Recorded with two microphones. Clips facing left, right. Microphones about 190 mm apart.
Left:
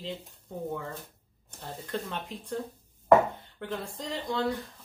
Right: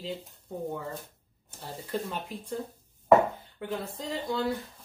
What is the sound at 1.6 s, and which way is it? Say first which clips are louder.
Speech: right 2 dB; 5° right (ahead or behind).